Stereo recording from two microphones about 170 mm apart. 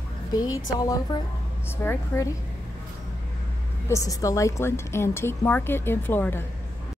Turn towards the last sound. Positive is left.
turn(degrees=10)  # may be behind; listen again after turning